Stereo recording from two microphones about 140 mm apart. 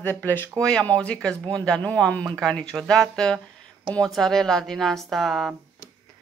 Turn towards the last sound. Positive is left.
turn(degrees=0)  # may be behind; listen again after turning